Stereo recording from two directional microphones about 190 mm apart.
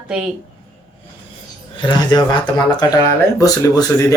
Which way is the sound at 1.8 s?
25° left (ahead or behind).